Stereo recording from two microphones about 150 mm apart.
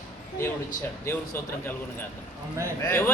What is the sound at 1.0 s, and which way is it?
Speech, 15° left (ahead or behind).